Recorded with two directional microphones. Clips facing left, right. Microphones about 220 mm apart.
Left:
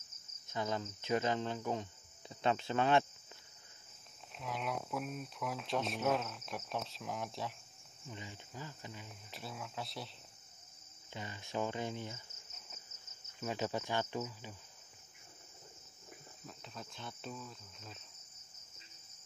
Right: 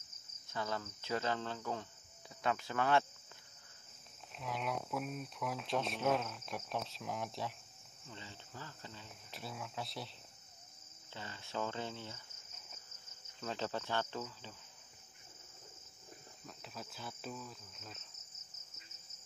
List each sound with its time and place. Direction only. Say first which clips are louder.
0.5 s cricket: left 3 dB; 20° left (ahead or behind)
4.4 s speech: even; centre (ahead or behind)
8.1 s cricket: left 3 dB; 15° left (ahead or behind)
9.3 s speech: even; centre (ahead or behind)
11.1 s cricket: left 3 dB; 15° left (ahead or behind)
13.4 s cricket: left 2 dB; 10° left (ahead or behind)
16.4 s speech: even; 5° right (ahead or behind)